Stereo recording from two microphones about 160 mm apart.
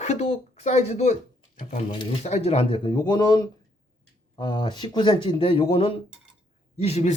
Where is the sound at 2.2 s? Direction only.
40° left (ahead or behind).